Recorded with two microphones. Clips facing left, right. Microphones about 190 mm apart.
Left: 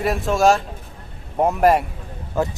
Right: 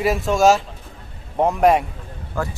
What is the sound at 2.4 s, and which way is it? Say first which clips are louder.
Speech: left 4 dB; 20° left (ahead or behind).